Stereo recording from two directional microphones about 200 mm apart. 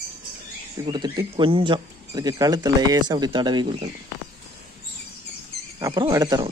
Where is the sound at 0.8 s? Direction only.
20° right (ahead or behind).